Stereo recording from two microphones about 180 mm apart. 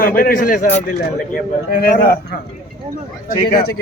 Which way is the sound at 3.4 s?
55° left (ahead or behind).